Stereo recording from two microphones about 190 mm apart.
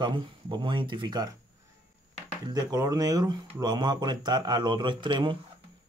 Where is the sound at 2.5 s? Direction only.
20° right (ahead or behind).